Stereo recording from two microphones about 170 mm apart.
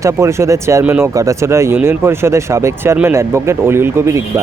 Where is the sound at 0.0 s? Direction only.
15° right (ahead or behind).